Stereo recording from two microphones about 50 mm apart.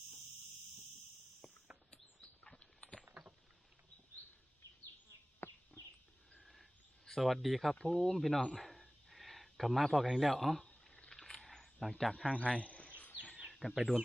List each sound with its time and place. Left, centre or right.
2.4 s clip-clop: left
5.4 s bird: left
6.3 s a sound: centre
7.2 s speech: centre
7.8 s speech: centre
8.5 s a sound: centre
10.9 s rowboat: centre
11.2 s a sound: centre
12.4 s bird: left
13.5 s speech: centre